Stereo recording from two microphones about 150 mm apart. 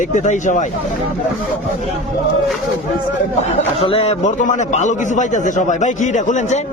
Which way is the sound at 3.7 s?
40° left (ahead or behind).